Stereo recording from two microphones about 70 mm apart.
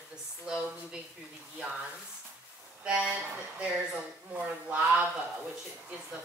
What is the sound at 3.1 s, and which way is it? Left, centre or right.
Speech, centre.